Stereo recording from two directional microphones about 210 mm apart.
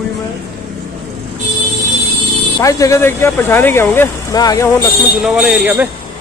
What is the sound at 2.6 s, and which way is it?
Speech, 15° left (ahead or behind).